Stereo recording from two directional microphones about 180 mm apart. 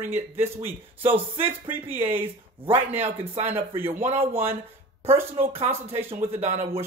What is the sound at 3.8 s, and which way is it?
Speech, 10° right (ahead or behind).